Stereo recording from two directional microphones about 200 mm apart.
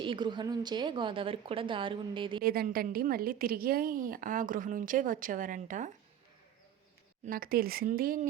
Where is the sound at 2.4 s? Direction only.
50° right (ahead or behind).